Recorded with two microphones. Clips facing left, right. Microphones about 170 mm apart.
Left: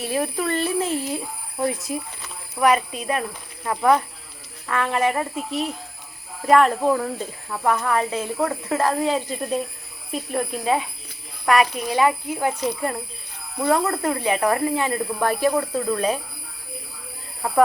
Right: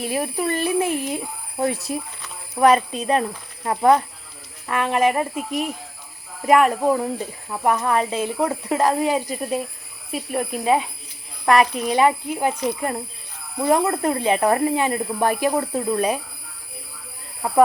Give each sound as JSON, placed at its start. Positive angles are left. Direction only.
{"t": 0.0, "sound": "speech", "side_deg": -15}
{"t": 11.4, "sound": "speech", "side_deg": -30}
{"t": 14.8, "sound": "speech", "side_deg": -15}